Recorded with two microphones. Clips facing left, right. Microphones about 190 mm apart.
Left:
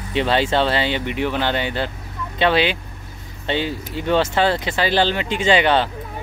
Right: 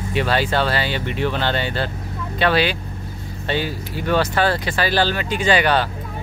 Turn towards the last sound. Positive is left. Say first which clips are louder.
# left 1 dB
turn(degrees=20)  # may be behind; listen again after turning